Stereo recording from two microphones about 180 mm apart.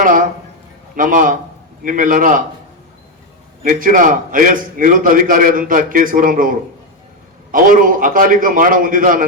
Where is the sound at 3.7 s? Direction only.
50° right (ahead or behind).